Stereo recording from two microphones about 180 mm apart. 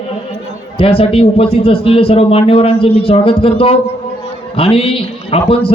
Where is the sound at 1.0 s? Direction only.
30° left (ahead or behind).